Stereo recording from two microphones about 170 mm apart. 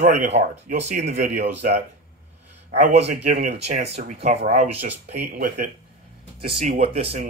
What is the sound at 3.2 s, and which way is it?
Speech, 40° right (ahead or behind).